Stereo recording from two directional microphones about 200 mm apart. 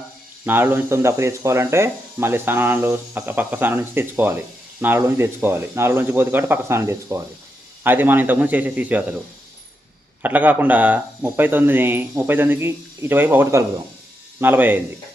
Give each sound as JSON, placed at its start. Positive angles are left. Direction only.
{"t": 0.4, "sound": "speech", "side_deg": -10}
{"t": 10.2, "sound": "speech", "side_deg": -10}